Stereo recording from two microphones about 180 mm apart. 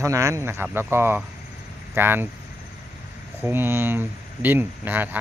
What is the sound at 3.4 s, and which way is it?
Speech, 10° right (ahead or behind).